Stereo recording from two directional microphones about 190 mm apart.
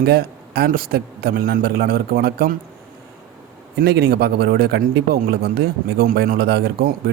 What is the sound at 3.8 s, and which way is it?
Speech, 55° right (ahead or behind).